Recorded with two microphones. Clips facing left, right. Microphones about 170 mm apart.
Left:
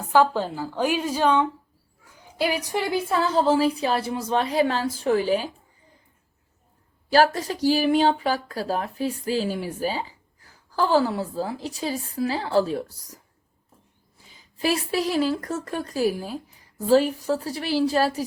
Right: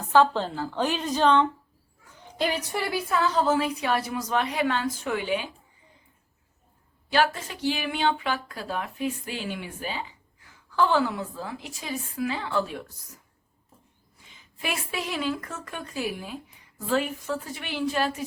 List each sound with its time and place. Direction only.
0.1 s a woman's voice: 10° left (ahead or behind)
2.9 s speech: 30° left (ahead or behind)
7.1 s speech: 35° left (ahead or behind)
14.3 s speech: 35° left (ahead or behind)